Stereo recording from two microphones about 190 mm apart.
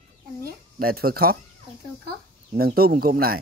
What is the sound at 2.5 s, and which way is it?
Speech, 50° right (ahead or behind).